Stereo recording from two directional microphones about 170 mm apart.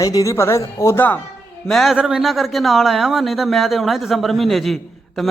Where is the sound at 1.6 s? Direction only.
Centre (ahead or behind).